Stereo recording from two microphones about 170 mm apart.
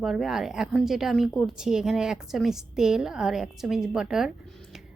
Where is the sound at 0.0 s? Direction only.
Centre (ahead or behind).